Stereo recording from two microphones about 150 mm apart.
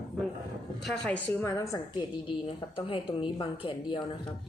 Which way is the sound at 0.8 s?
5° left (ahead or behind).